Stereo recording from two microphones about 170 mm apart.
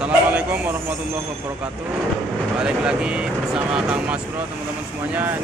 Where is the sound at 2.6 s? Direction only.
5° right (ahead or behind).